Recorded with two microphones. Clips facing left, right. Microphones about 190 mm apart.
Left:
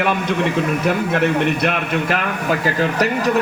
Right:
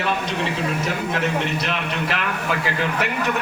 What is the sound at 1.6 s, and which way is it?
A man's voice, 50° left (ahead or behind).